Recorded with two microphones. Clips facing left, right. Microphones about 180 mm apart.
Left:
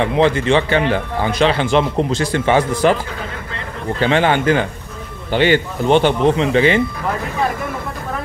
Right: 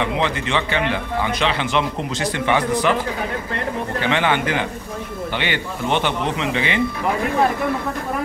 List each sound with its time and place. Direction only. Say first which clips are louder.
0.0 s a man's voice: left 7 dB; 35° left (ahead or behind)
4.1 s a man's voice: left 5 dB; 35° left (ahead or behind)